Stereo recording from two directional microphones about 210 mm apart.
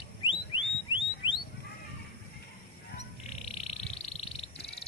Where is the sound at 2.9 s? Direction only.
30° left (ahead or behind).